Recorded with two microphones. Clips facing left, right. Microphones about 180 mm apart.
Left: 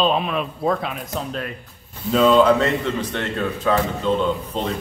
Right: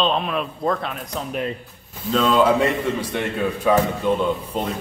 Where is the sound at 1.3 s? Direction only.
20° right (ahead or behind).